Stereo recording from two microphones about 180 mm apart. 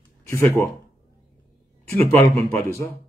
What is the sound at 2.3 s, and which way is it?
Speech, 15° left (ahead or behind).